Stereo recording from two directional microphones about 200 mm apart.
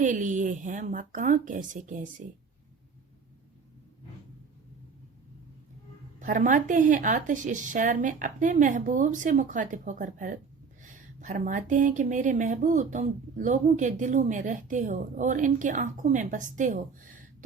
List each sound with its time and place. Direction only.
0.0 s speech: 40° right (ahead or behind)
6.1 s speech: 40° right (ahead or behind)